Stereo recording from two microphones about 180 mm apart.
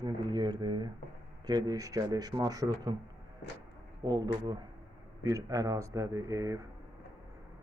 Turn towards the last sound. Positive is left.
turn(degrees=-20)  # may be behind; listen again after turning